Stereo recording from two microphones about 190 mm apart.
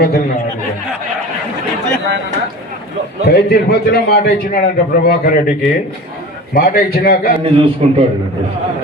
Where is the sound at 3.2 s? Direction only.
60° left (ahead or behind).